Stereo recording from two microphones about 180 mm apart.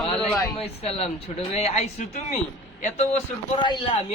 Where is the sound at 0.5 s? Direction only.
35° left (ahead or behind).